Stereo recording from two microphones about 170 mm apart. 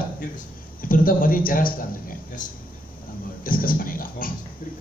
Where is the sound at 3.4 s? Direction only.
55° left (ahead or behind).